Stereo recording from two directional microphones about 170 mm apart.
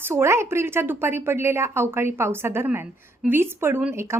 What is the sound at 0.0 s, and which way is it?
Speech, 15° right (ahead or behind).